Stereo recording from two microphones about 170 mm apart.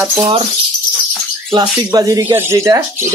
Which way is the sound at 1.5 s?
25° right (ahead or behind).